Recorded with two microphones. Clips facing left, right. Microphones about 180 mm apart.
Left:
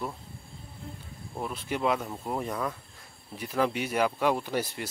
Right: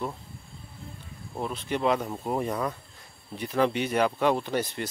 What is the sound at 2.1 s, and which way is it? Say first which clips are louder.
Speech: right 4 dB; 10° right (ahead or behind).